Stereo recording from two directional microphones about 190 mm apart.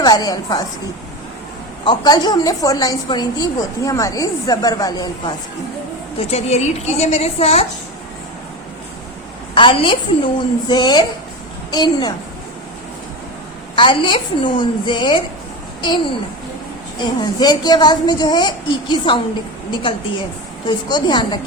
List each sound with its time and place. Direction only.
0.0 s a woman's voice: 20° left (ahead or behind)
1.8 s a woman's voice: 25° left (ahead or behind)
6.1 s a woman's voice: 35° left (ahead or behind)
9.6 s a woman's voice: 25° left (ahead or behind)
13.7 s a woman's voice: 25° left (ahead or behind)
20.7 s a woman's voice: 20° left (ahead or behind)